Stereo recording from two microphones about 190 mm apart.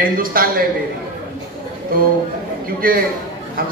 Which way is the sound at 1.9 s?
50° right (ahead or behind).